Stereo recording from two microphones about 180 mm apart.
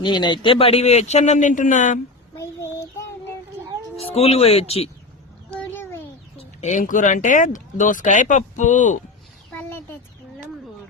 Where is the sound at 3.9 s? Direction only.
35° left (ahead or behind).